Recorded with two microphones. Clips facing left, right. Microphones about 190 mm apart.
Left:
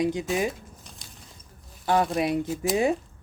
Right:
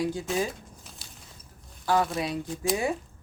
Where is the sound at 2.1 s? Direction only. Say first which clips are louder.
Left 6 dB; 20° left (ahead or behind).